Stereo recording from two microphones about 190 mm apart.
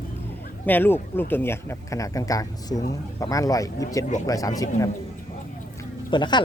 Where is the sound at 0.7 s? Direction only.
10° left (ahead or behind).